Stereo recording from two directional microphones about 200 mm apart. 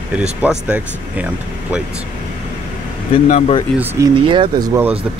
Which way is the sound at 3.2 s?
30° left (ahead or behind).